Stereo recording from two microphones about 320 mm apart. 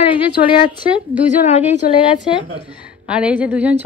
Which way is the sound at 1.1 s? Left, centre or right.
Left.